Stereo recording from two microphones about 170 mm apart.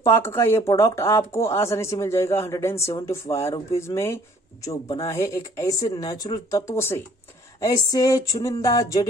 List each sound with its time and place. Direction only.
0.0 s speech: 15° left (ahead or behind)